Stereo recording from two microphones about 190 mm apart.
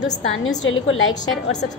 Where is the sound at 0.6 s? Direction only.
90° left.